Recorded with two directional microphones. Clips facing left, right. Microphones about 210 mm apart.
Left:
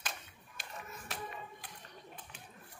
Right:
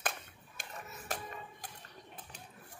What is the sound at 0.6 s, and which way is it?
Music, 50° right (ahead or behind).